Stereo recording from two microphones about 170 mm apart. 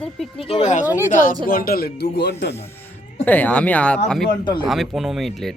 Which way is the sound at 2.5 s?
15° left (ahead or behind).